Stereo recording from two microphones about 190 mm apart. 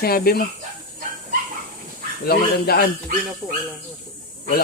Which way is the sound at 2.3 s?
55° left (ahead or behind).